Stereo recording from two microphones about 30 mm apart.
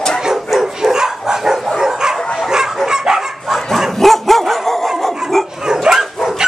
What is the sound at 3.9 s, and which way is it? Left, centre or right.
Dog, centre.